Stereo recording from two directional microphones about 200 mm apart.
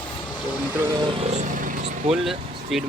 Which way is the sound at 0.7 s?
10° right (ahead or behind).